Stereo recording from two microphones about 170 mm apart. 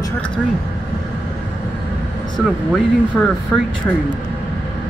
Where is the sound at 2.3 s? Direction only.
Centre (ahead or behind).